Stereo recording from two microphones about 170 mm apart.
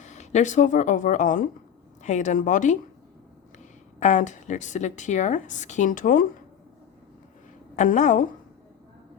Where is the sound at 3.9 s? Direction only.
45° left (ahead or behind).